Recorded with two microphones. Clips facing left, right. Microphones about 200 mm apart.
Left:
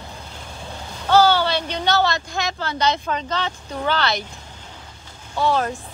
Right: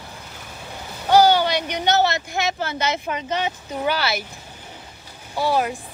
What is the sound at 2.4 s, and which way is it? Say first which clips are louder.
Speech: right 1 dB; 20° right (ahead or behind).